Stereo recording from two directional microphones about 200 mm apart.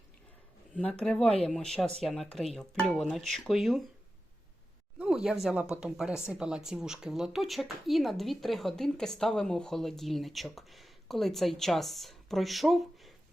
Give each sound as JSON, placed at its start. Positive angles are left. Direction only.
{"t": 0.8, "sound": "speech", "side_deg": 5}
{"t": 4.9, "sound": "speech", "side_deg": 0}